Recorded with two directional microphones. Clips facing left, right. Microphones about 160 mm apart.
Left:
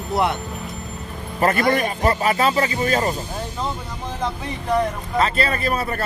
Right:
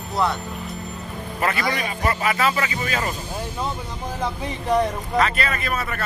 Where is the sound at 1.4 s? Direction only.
50° left (ahead or behind).